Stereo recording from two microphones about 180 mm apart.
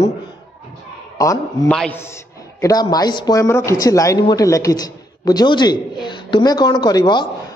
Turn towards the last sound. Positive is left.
turn(degrees=25)  # may be behind; listen again after turning